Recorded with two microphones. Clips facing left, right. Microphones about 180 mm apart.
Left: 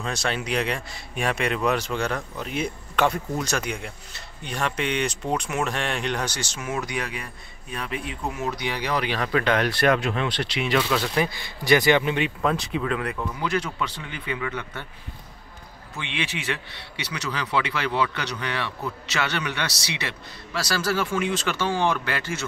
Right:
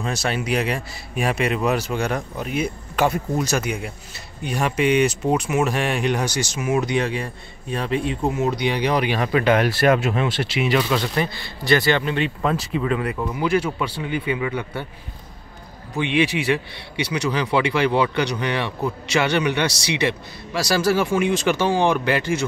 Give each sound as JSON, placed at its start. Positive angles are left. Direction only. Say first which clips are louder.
{"t": 0.0, "sound": "speech", "louder": "right 3 dB", "side_deg": -5}
{"t": 6.8, "sound": "speech", "louder": "right 8 dB", "side_deg": -25}
{"t": 12.4, "sound": "speech", "louder": "right 2 dB", "side_deg": 0}
{"t": 16.0, "sound": "speech", "louder": "right 11 dB", "side_deg": -15}